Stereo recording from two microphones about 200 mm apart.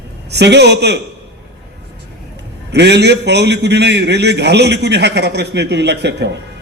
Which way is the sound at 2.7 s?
55° right (ahead or behind).